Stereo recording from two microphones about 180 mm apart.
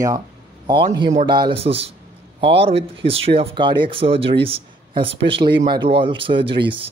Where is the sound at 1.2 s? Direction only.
25° right (ahead or behind).